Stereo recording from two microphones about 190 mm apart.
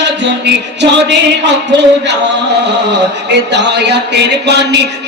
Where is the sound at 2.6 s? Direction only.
65° right (ahead or behind).